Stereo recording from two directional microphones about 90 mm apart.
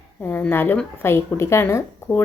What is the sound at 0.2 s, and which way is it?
Speech, 20° left (ahead or behind).